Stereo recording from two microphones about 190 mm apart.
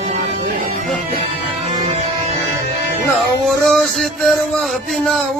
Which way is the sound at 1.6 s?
35° right (ahead or behind).